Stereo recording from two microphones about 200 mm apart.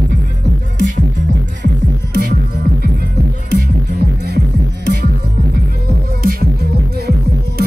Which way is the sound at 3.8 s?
55° right (ahead or behind).